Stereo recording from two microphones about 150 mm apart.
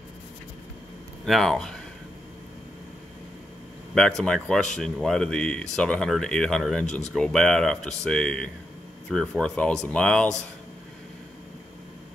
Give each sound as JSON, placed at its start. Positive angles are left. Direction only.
{"t": 1.2, "sound": "speech", "side_deg": 0}
{"t": 3.9, "sound": "speech", "side_deg": 5}
{"t": 6.9, "sound": "speech", "side_deg": 50}
{"t": 7.2, "sound": "speech", "side_deg": 5}